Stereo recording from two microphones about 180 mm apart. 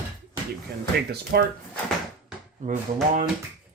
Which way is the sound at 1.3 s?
65° right (ahead or behind).